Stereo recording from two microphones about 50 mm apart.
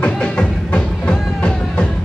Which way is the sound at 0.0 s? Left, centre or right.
Left.